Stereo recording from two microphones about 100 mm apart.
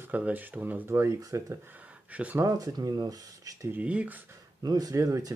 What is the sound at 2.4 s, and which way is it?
Speech, 35° right (ahead or behind).